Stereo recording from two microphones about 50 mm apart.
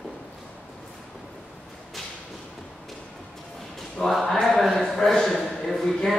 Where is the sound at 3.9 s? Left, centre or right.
Centre.